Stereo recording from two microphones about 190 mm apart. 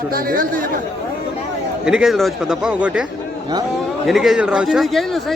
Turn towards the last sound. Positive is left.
turn(degrees=0)  # may be behind; listen again after turning